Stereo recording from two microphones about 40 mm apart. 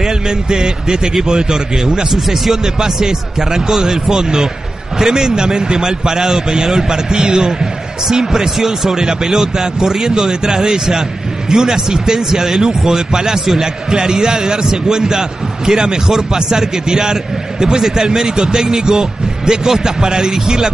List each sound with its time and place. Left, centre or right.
0.0 s speech: centre
2.1 s speech: centre
2.5 s speech: centre